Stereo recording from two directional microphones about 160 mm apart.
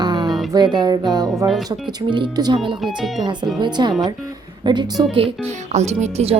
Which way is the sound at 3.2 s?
30° right (ahead or behind).